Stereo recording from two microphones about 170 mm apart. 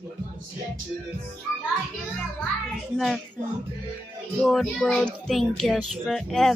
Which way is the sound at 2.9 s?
Centre (ahead or behind).